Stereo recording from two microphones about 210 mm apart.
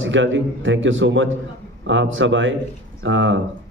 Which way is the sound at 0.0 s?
65° right (ahead or behind).